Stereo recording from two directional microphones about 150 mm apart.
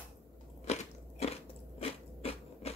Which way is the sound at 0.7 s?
45° left (ahead or behind).